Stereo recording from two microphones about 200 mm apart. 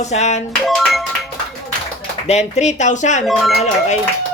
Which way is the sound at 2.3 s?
35° left (ahead or behind).